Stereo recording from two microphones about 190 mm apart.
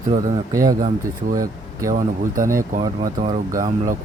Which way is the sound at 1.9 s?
45° right (ahead or behind).